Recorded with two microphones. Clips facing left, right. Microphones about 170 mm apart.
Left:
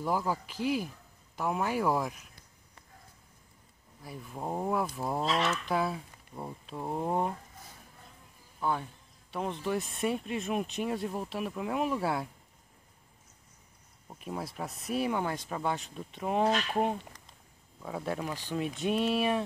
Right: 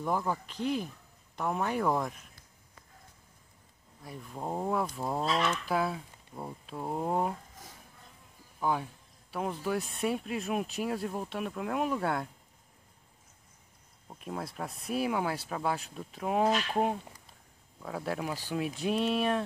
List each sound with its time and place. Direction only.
0.0 s speech: 5° left (ahead or behind)
4.0 s speech: 5° left (ahead or behind)
8.5 s speech: 10° right (ahead or behind)
14.0 s speech: centre (ahead or behind)